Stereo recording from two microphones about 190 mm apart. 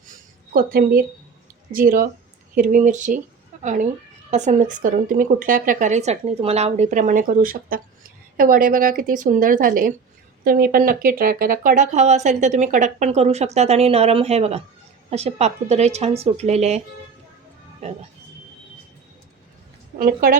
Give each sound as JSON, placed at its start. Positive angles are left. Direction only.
{"t": 0.5, "sound": "a woman's voice", "side_deg": -50}
{"t": 20.0, "sound": "a woman's voice", "side_deg": -45}